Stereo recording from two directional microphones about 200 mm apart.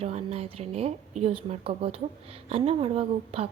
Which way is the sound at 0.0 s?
30° right (ahead or behind).